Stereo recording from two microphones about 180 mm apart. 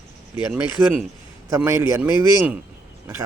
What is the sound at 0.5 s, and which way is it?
Speech, 10° right (ahead or behind).